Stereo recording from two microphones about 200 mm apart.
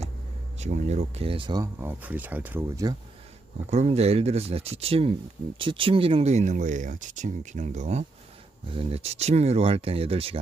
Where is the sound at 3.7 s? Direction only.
35° right (ahead or behind).